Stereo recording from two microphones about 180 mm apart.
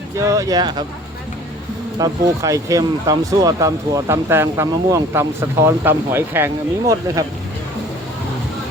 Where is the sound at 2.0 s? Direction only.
20° right (ahead or behind).